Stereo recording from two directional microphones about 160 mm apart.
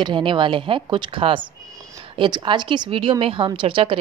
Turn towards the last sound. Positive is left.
turn(degrees=-35)  # may be behind; listen again after turning